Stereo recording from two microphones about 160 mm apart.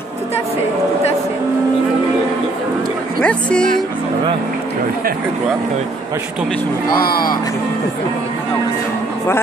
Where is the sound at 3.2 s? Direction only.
5° left (ahead or behind).